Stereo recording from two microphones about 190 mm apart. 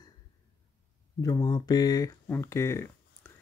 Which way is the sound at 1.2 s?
20° left (ahead or behind).